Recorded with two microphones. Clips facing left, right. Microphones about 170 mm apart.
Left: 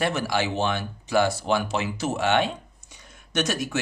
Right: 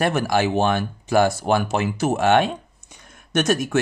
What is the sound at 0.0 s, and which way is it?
Speech, 50° right (ahead or behind).